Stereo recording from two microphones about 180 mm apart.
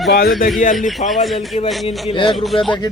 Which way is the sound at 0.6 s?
45° left (ahead or behind).